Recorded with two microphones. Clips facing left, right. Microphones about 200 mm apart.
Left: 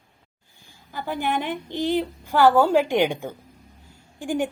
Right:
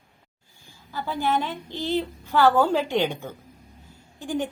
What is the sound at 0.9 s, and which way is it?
A woman's voice, 15° left (ahead or behind).